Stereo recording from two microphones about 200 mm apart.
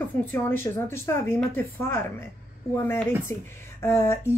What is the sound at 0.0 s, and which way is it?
Speech, 10° left (ahead or behind).